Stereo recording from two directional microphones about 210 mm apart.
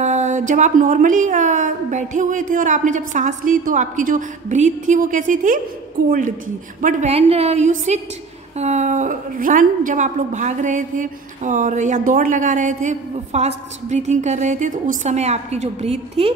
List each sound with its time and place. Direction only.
0.0 s a woman's voice: 35° right (ahead or behind)